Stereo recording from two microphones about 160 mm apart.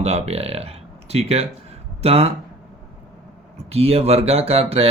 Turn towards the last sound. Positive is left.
turn(degrees=-40)  # may be behind; listen again after turning